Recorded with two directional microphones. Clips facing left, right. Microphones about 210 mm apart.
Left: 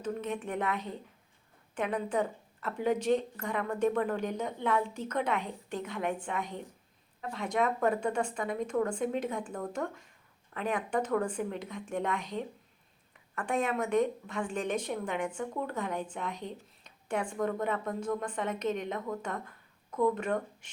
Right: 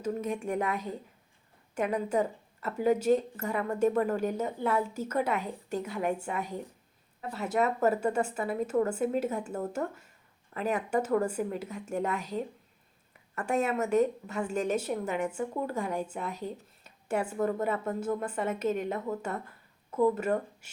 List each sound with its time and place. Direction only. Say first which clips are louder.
0.0 s a woman's voice: right 3 dB; 10° right (ahead or behind)